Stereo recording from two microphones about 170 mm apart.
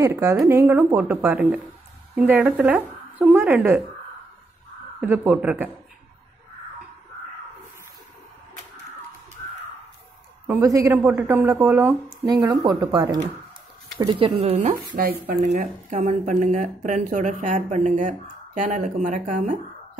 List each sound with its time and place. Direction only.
0.0 s speech: 20° right (ahead or behind)
5.0 s speech: 10° right (ahead or behind)
10.4 s speech: 20° right (ahead or behind)
11.0 s speech: 10° right (ahead or behind)
14.0 s speech: 35° right (ahead or behind)